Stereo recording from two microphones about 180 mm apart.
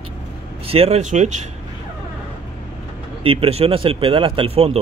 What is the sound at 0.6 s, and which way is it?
Speech, 35° right (ahead or behind).